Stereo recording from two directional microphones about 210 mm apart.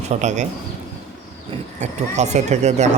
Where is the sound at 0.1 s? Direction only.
35° right (ahead or behind).